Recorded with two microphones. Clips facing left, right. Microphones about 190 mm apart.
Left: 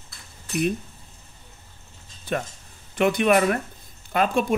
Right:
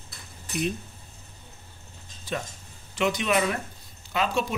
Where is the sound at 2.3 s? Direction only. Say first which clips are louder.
Left 5 dB; 60° left (ahead or behind).